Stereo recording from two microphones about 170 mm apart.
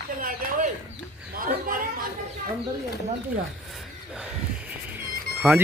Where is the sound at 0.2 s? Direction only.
55° right (ahead or behind).